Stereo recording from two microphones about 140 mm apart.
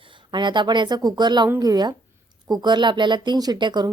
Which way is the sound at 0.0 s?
35° right (ahead or behind).